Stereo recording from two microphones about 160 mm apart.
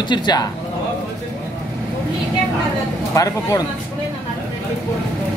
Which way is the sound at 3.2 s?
20° left (ahead or behind).